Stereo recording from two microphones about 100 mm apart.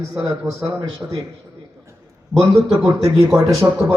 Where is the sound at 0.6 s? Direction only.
35° right (ahead or behind).